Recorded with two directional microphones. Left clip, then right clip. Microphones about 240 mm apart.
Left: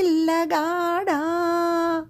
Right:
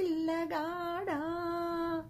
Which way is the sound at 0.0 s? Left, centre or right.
Left.